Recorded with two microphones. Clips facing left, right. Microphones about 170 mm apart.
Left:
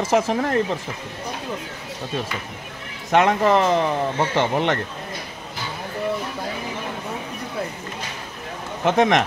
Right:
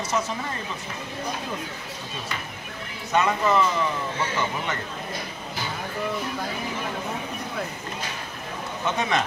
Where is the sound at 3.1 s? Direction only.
85° left.